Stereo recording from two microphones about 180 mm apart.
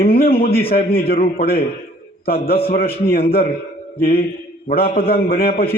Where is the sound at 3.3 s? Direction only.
60° left (ahead or behind).